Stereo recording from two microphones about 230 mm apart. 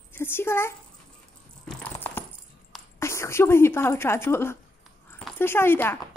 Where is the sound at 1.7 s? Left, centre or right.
Centre.